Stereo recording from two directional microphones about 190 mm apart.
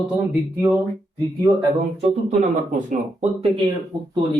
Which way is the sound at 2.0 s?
40° right (ahead or behind).